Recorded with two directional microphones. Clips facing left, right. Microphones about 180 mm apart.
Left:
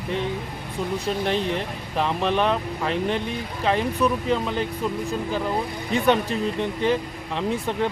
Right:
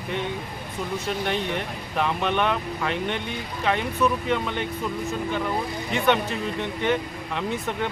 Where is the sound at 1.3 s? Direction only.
30° left (ahead or behind).